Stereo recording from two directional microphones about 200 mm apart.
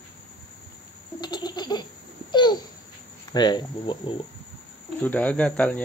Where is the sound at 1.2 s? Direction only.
20° left (ahead or behind).